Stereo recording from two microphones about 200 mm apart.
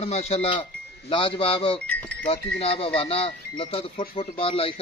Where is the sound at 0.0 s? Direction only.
30° left (ahead or behind).